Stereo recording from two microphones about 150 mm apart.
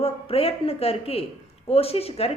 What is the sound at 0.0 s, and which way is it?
A woman's voice, 40° left (ahead or behind).